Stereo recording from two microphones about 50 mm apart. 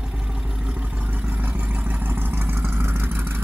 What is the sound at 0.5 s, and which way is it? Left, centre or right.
Vehicle, right.